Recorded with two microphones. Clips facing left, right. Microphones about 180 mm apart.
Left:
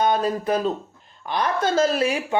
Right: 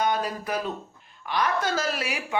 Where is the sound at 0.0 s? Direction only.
30° left (ahead or behind).